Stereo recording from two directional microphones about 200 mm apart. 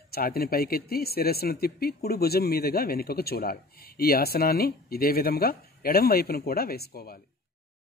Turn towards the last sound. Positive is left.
turn(degrees=50)  # may be behind; listen again after turning